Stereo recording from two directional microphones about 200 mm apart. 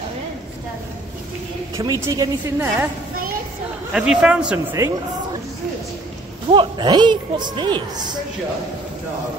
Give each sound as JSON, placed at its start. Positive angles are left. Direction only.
{"t": 1.8, "sound": "a woman's voice", "side_deg": -15}
{"t": 3.9, "sound": "a man's voice", "side_deg": -5}
{"t": 6.5, "sound": "a woman's voice", "side_deg": -25}